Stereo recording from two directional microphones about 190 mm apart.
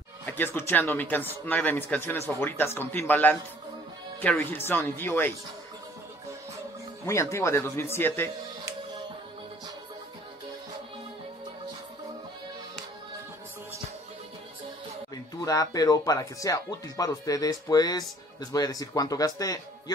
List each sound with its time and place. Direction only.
0.2 s speech: 10° left (ahead or behind)
7.1 s speech: 15° left (ahead or behind)
15.4 s speech: 20° left (ahead or behind)